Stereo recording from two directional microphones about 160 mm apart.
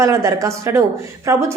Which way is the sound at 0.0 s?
20° right (ahead or behind).